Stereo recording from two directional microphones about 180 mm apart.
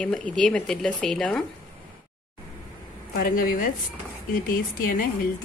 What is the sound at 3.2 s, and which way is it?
A woman's voice, 50° left (ahead or behind).